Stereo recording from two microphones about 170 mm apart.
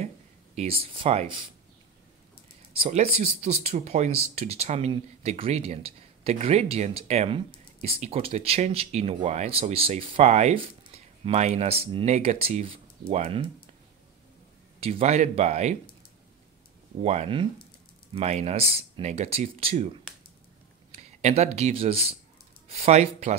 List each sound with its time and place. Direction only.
0.6 s speech: 35° right (ahead or behind)
2.8 s speech: 40° right (ahead or behind)
14.8 s speech: 40° right (ahead or behind)
17.0 s speech: 40° right (ahead or behind)